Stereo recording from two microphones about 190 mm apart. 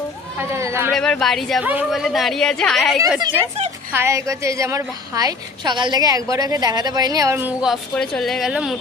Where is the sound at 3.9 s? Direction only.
15° right (ahead or behind).